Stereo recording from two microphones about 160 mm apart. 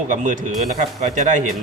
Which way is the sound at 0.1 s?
50° right (ahead or behind).